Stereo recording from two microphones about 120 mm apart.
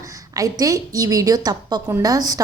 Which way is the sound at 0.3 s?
30° right (ahead or behind).